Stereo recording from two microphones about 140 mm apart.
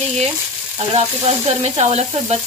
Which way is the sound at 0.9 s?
50° right (ahead or behind).